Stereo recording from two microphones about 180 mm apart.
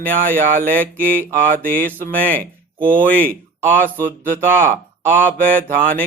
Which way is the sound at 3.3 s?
15° right (ahead or behind).